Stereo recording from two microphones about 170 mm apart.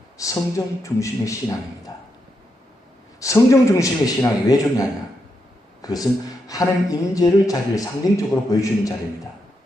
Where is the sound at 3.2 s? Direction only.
20° left (ahead or behind).